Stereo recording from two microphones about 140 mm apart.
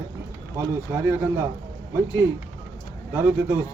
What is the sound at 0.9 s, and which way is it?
Speech, 15° right (ahead or behind).